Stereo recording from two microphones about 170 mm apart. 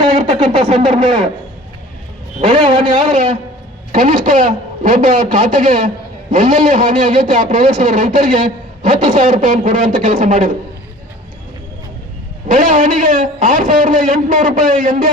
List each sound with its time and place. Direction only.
0.0 s a sound: 25° right (ahead or behind)
0.8 s a man's voice: 25° right (ahead or behind)
2.5 s a man's voice: 25° right (ahead or behind)
3.1 s a man's voice: 50° right (ahead or behind)
12.5 s a man's voice: 50° right (ahead or behind)